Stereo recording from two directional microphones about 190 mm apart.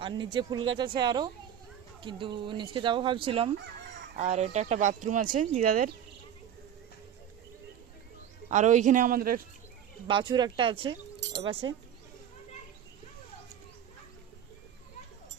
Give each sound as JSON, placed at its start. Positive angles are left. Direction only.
{"t": 0.0, "sound": "speech", "side_deg": -25}
{"t": 8.4, "sound": "speech", "side_deg": -40}
{"t": 10.1, "sound": "speech", "side_deg": -25}